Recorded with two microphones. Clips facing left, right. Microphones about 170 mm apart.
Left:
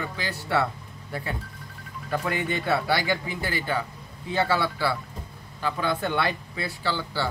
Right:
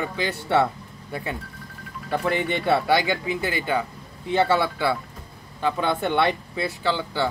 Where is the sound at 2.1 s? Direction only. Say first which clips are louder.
Right 4 dB; 25° right (ahead or behind).